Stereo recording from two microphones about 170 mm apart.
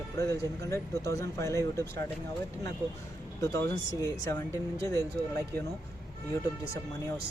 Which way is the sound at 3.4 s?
20° left (ahead or behind).